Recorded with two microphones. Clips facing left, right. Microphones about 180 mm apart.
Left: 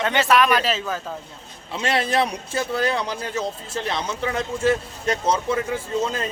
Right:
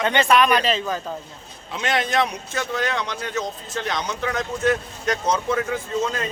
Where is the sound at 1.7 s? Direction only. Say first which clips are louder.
Left 1 dB; 30° left (ahead or behind).